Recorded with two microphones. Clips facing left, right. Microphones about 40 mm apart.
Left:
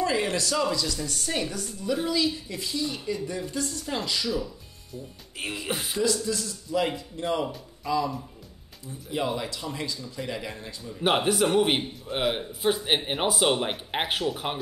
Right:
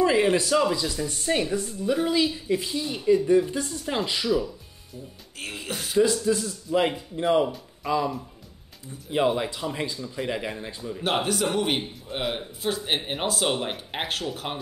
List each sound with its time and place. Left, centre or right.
0.0 s speech: right
5.7 s speech: centre
5.9 s speech: right
7.4 s speech: centre
9.3 s speech: right
11.0 s speech: centre